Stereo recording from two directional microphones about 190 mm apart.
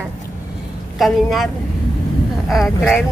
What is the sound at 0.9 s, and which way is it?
Speech, centre (ahead or behind).